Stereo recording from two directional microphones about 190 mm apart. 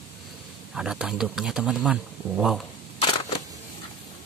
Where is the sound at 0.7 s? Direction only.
5° right (ahead or behind).